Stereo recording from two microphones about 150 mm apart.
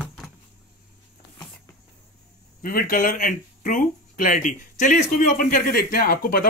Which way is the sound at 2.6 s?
70° left (ahead or behind).